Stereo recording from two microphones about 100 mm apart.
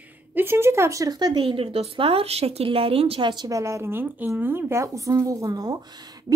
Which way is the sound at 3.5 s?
30° right (ahead or behind).